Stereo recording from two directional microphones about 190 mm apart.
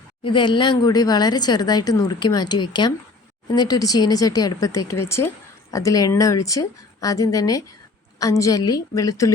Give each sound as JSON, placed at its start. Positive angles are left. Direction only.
{"t": 0.2, "sound": "a woman's voice", "side_deg": 25}